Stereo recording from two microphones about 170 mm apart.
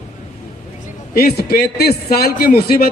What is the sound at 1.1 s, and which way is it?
A man's voice, 65° left (ahead or behind).